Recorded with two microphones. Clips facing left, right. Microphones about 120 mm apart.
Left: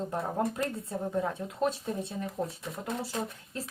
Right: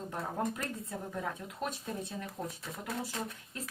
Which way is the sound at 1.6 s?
30° left (ahead or behind).